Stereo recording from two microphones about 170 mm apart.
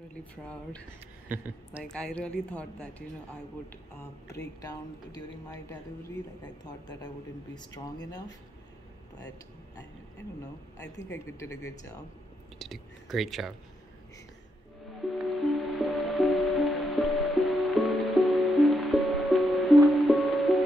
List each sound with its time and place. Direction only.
0.1 s speech: 5° left (ahead or behind)
1.3 s speech: 10° right (ahead or behind)
1.9 s speech: 5° left (ahead or behind)
4.6 s a woman's voice: 20° left (ahead or behind)
11.1 s a woman's voice: 15° left (ahead or behind)
12.5 s speech: centre (ahead or behind)
15.1 s music: centre (ahead or behind)